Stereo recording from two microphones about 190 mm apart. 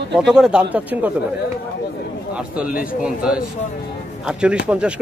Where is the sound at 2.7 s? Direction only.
45° left (ahead or behind).